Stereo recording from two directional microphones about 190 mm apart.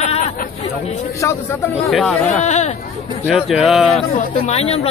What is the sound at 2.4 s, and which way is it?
Speech, 40° left (ahead or behind).